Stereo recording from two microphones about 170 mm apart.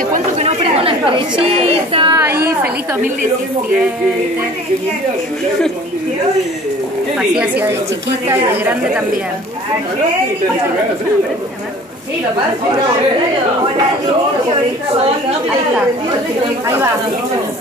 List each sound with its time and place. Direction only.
0.1 s chatter: 40° right (ahead or behind)
1.9 s speech: 30° right (ahead or behind)
2.1 s a woman's voice: 15° right (ahead or behind)
7.2 s a woman's voice: 5° right (ahead or behind)